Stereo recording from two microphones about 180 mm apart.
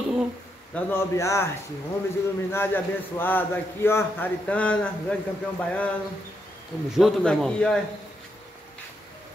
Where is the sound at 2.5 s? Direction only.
15° left (ahead or behind).